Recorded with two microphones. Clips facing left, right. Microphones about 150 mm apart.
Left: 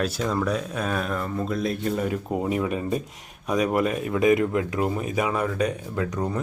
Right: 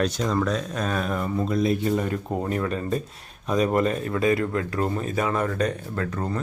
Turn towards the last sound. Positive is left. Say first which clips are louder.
# left 1 dB
turn(degrees=10)  # may be behind; listen again after turning